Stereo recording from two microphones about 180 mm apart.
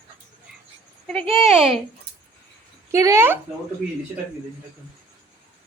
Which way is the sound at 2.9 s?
15° right (ahead or behind).